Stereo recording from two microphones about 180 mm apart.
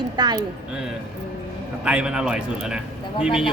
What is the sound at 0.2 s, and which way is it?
Speech, 25° right (ahead or behind).